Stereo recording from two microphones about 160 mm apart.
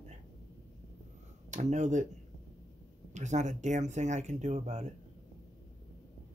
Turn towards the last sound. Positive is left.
turn(degrees=-45)  # may be behind; listen again after turning